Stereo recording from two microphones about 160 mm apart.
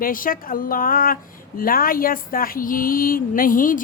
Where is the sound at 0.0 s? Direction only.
60° left (ahead or behind).